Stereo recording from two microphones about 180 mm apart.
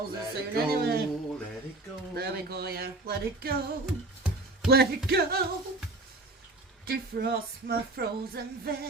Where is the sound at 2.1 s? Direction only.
60° right (ahead or behind).